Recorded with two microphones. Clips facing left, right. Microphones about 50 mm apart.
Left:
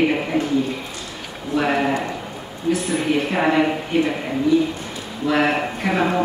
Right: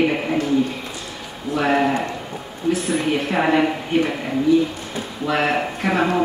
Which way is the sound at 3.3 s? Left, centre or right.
Centre.